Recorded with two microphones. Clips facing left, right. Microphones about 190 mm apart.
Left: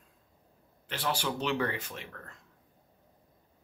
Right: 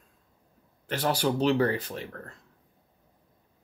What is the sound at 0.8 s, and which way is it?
Speech, 45° right (ahead or behind).